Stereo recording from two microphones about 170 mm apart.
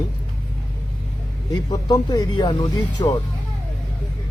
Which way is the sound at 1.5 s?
25° left (ahead or behind).